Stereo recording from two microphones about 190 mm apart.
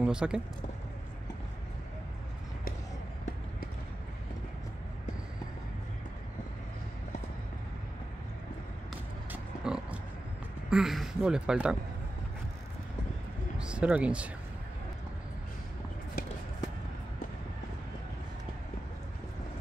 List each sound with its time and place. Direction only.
0.0 s speech: 5° right (ahead or behind)
9.3 s pig: 5° right (ahead or behind)
10.7 s speech: centre (ahead or behind)
13.6 s speech: 5° right (ahead or behind)
16.2 s a sound: 55° left (ahead or behind)